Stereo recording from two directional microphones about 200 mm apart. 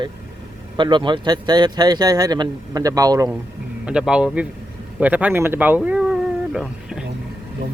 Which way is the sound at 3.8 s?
5° right (ahead or behind).